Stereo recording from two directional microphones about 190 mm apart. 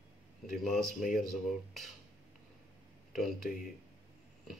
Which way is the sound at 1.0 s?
45° left (ahead or behind).